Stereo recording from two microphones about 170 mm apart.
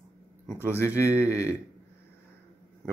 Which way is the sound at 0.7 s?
15° left (ahead or behind).